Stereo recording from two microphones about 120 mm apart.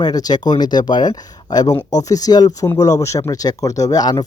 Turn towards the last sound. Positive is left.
turn(degrees=30)  # may be behind; listen again after turning